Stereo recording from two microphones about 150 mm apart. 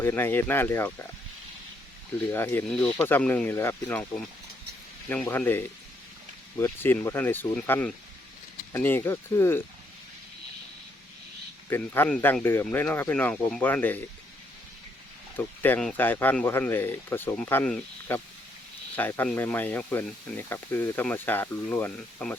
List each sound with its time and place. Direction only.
0.0 s speech: 15° left (ahead or behind)
2.2 s speech: 15° left (ahead or behind)
5.2 s speech: 15° left (ahead or behind)
11.7 s speech: 10° left (ahead or behind)
15.4 s speech: 10° left (ahead or behind)